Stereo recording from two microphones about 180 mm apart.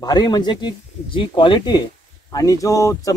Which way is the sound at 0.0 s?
25° left (ahead or behind).